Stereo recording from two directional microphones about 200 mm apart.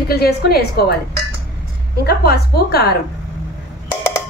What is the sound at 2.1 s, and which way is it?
Speech, 50° left (ahead or behind).